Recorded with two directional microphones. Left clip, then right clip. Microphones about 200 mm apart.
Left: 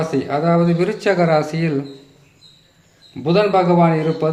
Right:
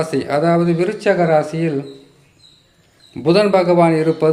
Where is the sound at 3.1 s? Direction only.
20° right (ahead or behind).